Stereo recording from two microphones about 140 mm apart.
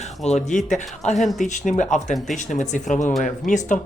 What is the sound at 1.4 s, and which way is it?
Speech, 60° left (ahead or behind).